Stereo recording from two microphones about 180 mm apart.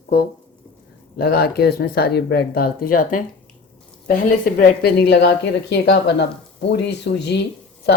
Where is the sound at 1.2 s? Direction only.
60° left (ahead or behind).